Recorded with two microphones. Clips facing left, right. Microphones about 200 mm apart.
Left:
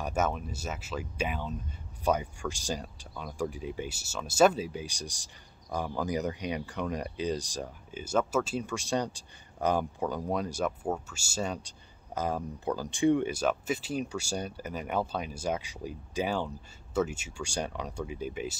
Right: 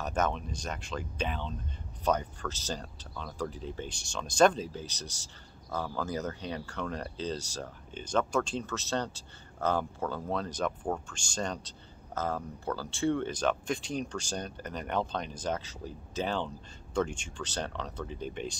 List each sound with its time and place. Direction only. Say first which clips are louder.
0.0 s speech: left 1 dB; 10° left (ahead or behind)